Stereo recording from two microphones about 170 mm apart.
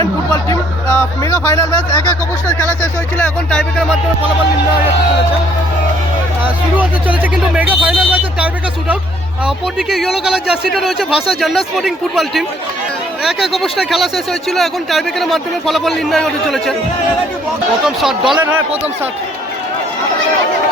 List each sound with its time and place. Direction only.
0.9 s speech: 15° left (ahead or behind)
3.6 s speech: centre (ahead or behind)
6.4 s speech: 10° right (ahead or behind)
9.7 s speech: centre (ahead or behind)
17.8 s speech: centre (ahead or behind)